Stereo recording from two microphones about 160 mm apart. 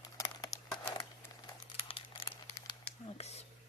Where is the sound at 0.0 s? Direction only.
20° left (ahead or behind).